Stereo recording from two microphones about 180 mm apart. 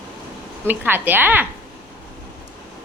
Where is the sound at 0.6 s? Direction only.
10° right (ahead or behind).